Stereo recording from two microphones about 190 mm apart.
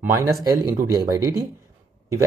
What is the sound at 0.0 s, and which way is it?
Speech, 15° right (ahead or behind).